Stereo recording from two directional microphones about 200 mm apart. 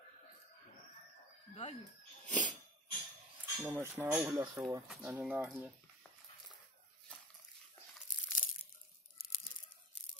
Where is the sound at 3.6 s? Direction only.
10° right (ahead or behind).